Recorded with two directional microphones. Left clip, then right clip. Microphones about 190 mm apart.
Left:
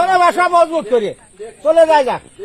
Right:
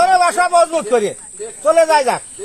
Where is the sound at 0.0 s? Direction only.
40° left (ahead or behind).